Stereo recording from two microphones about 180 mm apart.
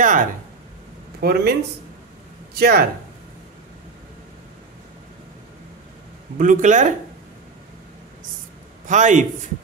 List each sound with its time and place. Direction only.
0.0 s a sound: 45° right (ahead or behind)
1.2 s speech: 65° right (ahead or behind)
6.3 s a man's voice: 45° right (ahead or behind)
8.8 s a man's voice: 45° right (ahead or behind)